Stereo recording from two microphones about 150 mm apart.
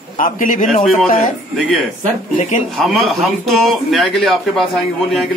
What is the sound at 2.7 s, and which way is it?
A man's voice, centre (ahead or behind).